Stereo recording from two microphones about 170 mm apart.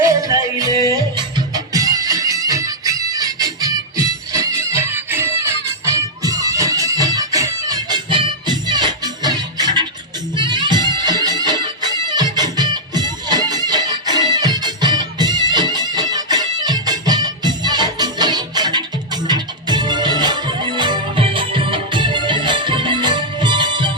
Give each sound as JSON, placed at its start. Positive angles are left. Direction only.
{"t": 0.0, "sound": "music", "side_deg": -20}